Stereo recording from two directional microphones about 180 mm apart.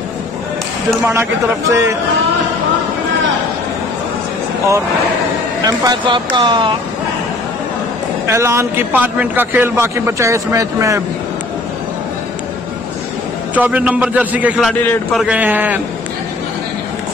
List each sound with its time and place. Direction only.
1.7 s a man's voice: 15° right (ahead or behind)
5.6 s speech: 20° right (ahead or behind)
8.3 s a man's voice: 15° right (ahead or behind)
13.6 s a man's voice: 10° right (ahead or behind)
14.7 s a man's voice: 5° left (ahead or behind)
15.2 s a man's voice: 10° right (ahead or behind)